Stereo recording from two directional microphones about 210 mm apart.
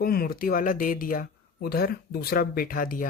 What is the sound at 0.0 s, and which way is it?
Speech, 45° left (ahead or behind).